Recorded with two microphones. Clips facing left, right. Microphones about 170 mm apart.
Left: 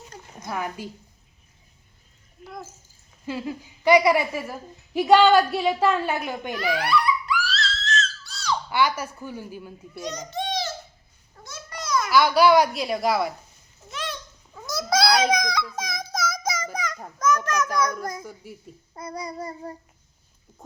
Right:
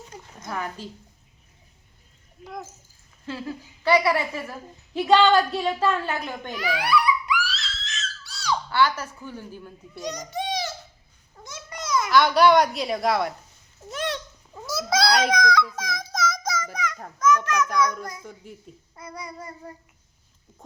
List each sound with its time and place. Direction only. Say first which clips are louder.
0.5 s a woman's voice: left 2 dB; 10° left (ahead or behind)
3.2 s a woman's voice: left 2 dB; 15° left (ahead or behind)
6.7 s screaming: right 2 dB; 10° right (ahead or behind)
8.7 s a woman's voice: right 1 dB; 10° left (ahead or behind)
10.0 s a sound: even; 15° right (ahead or behind)
11.4 s babbling: even; 20° right (ahead or behind)
12.1 s a child's voice: even; 5° left (ahead or behind)
14.6 s cat: left 1 dB; 5° right (ahead or behind); by 15.6 s 15° left (ahead or behind)
15.7 s a sound: left 1 dB; 15° left (ahead or behind)
16.2 s child singing: right 1 dB; 5° left (ahead or behind)
16.7 s children playing: even; 40° left (ahead or behind)
17.2 s honk: right 2 dB; 40° left (ahead or behind)
17.7 s a child's voice: right 1 dB; 45° left (ahead or behind)
18.9 s child singing: left 5 dB; 35° left (ahead or behind)